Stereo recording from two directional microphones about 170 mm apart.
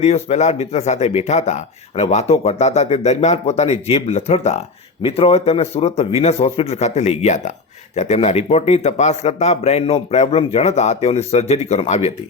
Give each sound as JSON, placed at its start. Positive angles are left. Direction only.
{"t": 0.0, "sound": "speech", "side_deg": 40}